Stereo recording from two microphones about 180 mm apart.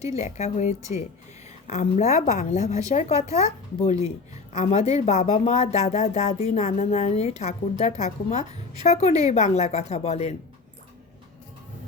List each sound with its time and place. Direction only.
0.0 s a woman's voice: 40° left (ahead or behind)